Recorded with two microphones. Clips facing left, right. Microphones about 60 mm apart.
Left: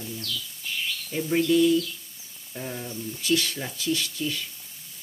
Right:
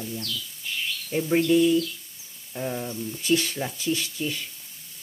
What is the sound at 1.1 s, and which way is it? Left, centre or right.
Speech, right.